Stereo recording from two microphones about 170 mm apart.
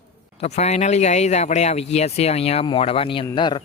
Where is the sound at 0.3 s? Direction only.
40° left (ahead or behind).